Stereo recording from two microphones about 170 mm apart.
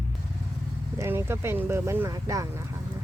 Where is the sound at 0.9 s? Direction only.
15° right (ahead or behind).